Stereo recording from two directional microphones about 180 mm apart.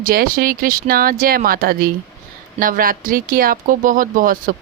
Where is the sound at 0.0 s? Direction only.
55° right (ahead or behind).